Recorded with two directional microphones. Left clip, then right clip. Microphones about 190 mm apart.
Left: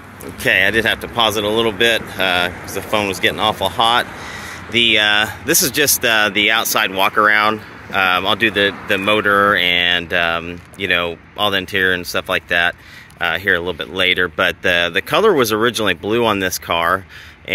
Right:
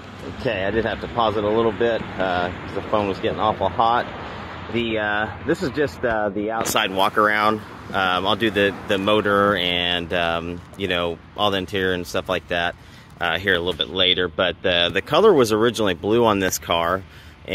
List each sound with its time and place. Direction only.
0.4 s speech: 15° left (ahead or behind)
0.7 s speech: 30° left (ahead or behind)
5.5 s speech: 35° left (ahead or behind)
6.4 s speech: 25° left (ahead or behind)
6.7 s speech: centre (ahead or behind)
15.0 s speech: centre (ahead or behind)